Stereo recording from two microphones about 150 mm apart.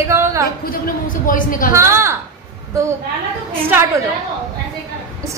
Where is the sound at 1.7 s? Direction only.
20° right (ahead or behind).